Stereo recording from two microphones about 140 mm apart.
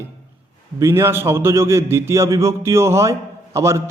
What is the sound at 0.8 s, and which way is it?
A man's voice, 20° right (ahead or behind).